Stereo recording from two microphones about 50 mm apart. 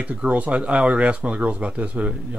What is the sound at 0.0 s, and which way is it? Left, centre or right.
Speech, right.